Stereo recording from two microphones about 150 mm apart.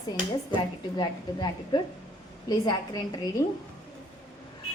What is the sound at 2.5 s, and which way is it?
Speech, 25° left (ahead or behind).